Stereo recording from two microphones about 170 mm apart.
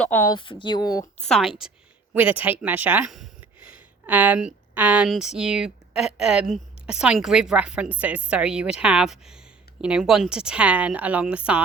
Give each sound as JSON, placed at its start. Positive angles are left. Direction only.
{"t": 0.0, "sound": "a woman's voice", "side_deg": 10}
{"t": 0.3, "sound": "speech", "side_deg": 30}
{"t": 1.2, "sound": "speech", "side_deg": 0}